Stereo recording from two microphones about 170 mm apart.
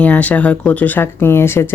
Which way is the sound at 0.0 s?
10° left (ahead or behind).